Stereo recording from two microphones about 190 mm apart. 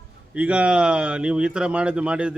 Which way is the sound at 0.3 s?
5° right (ahead or behind).